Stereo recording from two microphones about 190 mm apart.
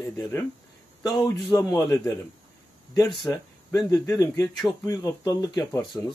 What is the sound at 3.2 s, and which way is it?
A man's voice, 15° left (ahead or behind).